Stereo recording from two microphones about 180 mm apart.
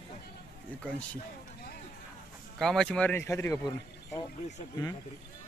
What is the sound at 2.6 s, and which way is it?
Speech, centre (ahead or behind).